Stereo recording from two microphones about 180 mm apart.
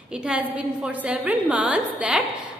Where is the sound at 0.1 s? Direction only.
5° right (ahead or behind).